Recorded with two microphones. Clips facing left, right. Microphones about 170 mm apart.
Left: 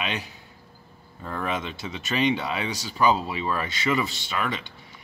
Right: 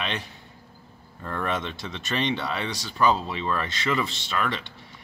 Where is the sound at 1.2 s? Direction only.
5° left (ahead or behind).